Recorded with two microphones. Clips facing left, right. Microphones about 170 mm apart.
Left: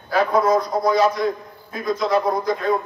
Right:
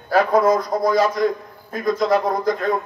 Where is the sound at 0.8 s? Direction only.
45° right (ahead or behind).